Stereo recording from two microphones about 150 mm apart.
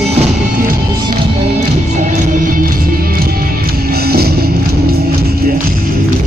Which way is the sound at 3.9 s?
90° right.